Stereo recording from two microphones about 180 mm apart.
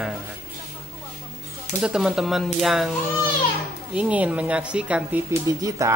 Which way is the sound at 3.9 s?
5° right (ahead or behind).